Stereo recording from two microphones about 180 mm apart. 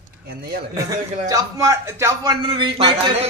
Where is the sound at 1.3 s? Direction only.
15° right (ahead or behind).